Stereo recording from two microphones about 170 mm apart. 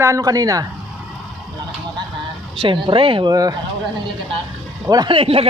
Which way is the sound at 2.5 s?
30° right (ahead or behind).